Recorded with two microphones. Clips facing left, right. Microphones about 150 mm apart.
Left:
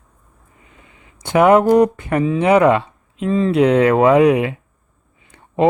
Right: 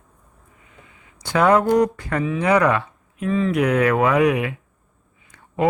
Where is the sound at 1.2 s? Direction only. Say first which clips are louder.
Left 5 dB; 25° left (ahead or behind).